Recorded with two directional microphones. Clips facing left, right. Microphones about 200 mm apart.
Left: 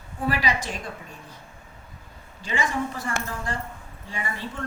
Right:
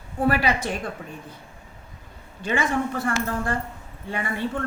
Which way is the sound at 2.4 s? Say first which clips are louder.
Right 3 dB; 55° right (ahead or behind).